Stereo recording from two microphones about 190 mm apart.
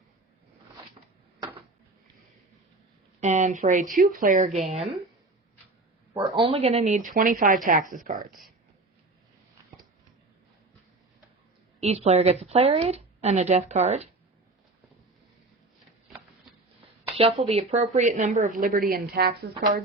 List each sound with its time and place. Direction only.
1.4 s a sound: 30° right (ahead or behind)
3.2 s a woman's voice: 40° right (ahead or behind)
6.1 s a woman's voice: 25° right (ahead or behind); by 8.1 s 45° right (ahead or behind)
11.8 s a woman's voice: 30° right (ahead or behind)
17.0 s a woman's voice: 30° right (ahead or behind); by 19.5 s 55° right (ahead or behind)